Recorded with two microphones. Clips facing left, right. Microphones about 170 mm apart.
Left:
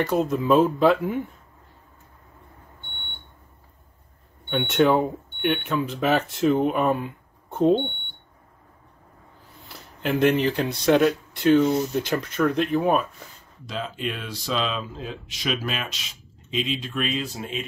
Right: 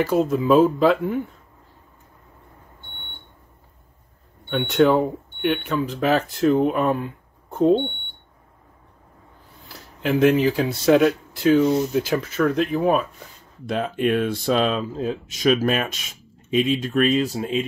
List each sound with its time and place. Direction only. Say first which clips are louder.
0.0 s speech: right 3 dB; centre (ahead or behind)
4.5 s speech: right 2 dB; centre (ahead or behind)
9.7 s speech: right 3 dB; centre (ahead or behind)
13.7 s speech: right 9 dB; 55° right (ahead or behind); by 17.6 s 35° right (ahead or behind)